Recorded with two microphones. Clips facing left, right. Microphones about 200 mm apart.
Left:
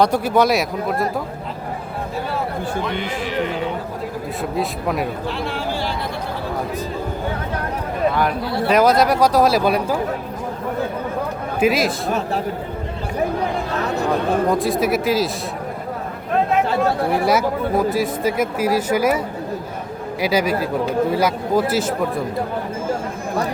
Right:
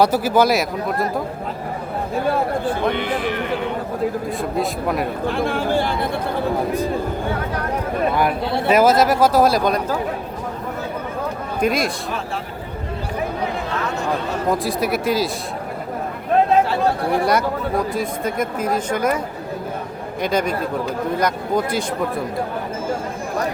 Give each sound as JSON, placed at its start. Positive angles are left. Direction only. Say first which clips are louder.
{"t": 0.0, "sound": "speech", "louder": "even", "side_deg": -5}
{"t": 2.8, "sound": "a man's voice", "louder": "right 4 dB", "side_deg": -55}
{"t": 4.5, "sound": "speech", "louder": "even", "side_deg": 0}
{"t": 5.2, "sound": "speech", "louder": "right 4 dB", "side_deg": -50}
{"t": 8.4, "sound": "speech", "louder": "right 1 dB", "side_deg": -25}
{"t": 8.7, "sound": "speech", "louder": "even", "side_deg": -5}
{"t": 11.6, "sound": "speech", "louder": "left 2 dB", "side_deg": 5}
{"t": 12.0, "sound": "a man's voice", "louder": "left 5 dB", "side_deg": 45}
{"t": 14.5, "sound": "speech", "louder": "left 2 dB", "side_deg": 0}
{"t": 17.1, "sound": "speech", "louder": "left 1 dB", "side_deg": 5}
{"t": 20.2, "sound": "speech", "louder": "left 2 dB", "side_deg": 5}